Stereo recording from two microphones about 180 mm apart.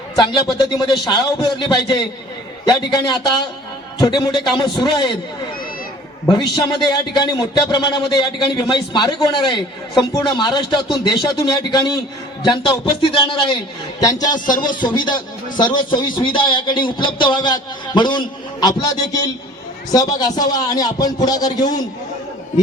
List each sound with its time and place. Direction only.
0.2 s speech: 25° left (ahead or behind)
6.2 s speech: 20° left (ahead or behind)